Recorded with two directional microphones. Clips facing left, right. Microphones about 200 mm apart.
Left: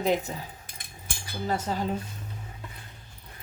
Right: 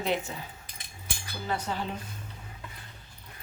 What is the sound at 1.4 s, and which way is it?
Speech, 40° left (ahead or behind).